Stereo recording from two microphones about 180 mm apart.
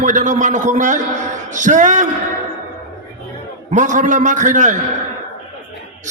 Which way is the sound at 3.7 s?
45° right (ahead or behind).